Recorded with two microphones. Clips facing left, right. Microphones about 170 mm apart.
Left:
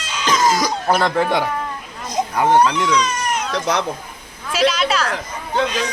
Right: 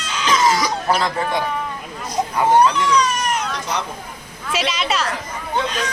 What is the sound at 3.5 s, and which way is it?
Speech, 90° left.